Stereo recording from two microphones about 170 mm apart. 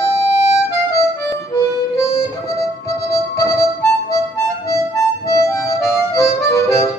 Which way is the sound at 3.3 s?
20° left (ahead or behind).